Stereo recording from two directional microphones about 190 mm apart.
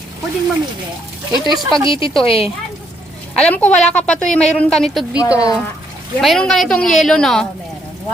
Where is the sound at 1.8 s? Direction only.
25° left (ahead or behind).